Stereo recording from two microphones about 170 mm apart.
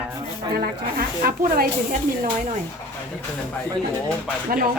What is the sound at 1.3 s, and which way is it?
Speech, 60° right (ahead or behind).